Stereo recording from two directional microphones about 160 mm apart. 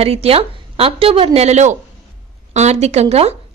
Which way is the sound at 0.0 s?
40° right (ahead or behind).